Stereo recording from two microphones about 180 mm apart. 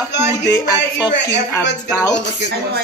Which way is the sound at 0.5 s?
20° left (ahead or behind).